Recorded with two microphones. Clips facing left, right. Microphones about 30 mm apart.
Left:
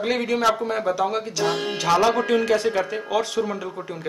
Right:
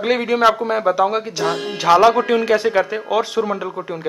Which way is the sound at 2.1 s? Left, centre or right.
Centre.